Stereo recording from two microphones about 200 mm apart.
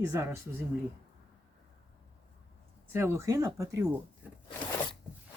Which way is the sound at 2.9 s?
10° right (ahead or behind).